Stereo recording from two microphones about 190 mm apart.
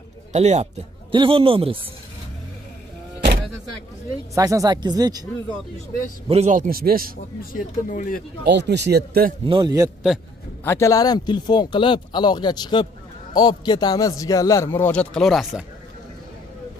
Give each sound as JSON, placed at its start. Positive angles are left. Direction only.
{"t": 0.3, "sound": "a man's voice", "side_deg": -35}
{"t": 4.4, "sound": "a man's voice", "side_deg": -15}
{"t": 6.2, "sound": "speech", "side_deg": -35}
{"t": 7.5, "sound": "speech", "side_deg": 45}
{"t": 8.5, "sound": "speech", "side_deg": -65}
{"t": 9.5, "sound": "a man's voice", "side_deg": -20}
{"t": 10.6, "sound": "a man's voice", "side_deg": 15}